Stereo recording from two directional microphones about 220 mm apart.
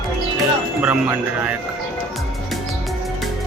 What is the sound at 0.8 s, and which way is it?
Speech, 5° right (ahead or behind).